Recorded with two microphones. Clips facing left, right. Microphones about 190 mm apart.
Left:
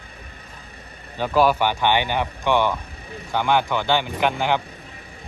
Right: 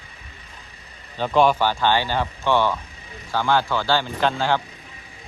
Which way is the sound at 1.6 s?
15° left (ahead or behind).